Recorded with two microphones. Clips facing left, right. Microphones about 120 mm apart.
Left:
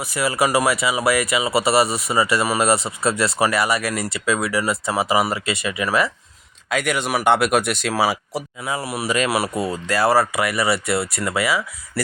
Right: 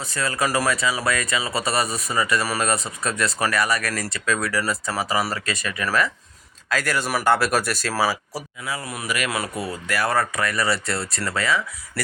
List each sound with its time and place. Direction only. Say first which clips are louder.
0.0 s speech: left 4 dB; 20° left (ahead or behind)
9.4 s speech: left 5 dB; 15° left (ahead or behind)
10.3 s speech: left 3 dB; 10° left (ahead or behind)